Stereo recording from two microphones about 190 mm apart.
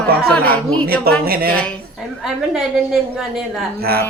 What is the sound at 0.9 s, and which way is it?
Speech, 50° right (ahead or behind).